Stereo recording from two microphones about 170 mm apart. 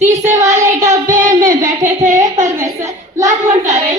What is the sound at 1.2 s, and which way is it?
Child singing, 20° right (ahead or behind).